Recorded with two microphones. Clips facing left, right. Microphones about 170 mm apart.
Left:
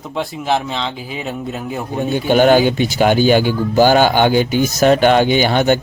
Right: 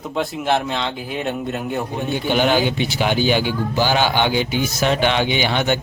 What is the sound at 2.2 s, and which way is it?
Speech, 45° left (ahead or behind).